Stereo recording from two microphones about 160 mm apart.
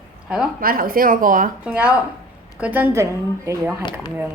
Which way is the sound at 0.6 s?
65° right (ahead or behind).